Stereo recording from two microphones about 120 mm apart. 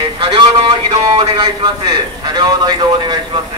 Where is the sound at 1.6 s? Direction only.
35° right (ahead or behind).